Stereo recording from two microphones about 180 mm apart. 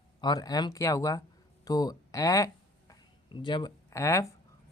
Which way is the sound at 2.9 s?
25° left (ahead or behind).